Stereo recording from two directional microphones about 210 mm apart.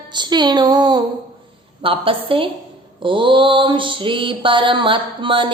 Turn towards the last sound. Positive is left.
turn(degrees=-25)  # may be behind; listen again after turning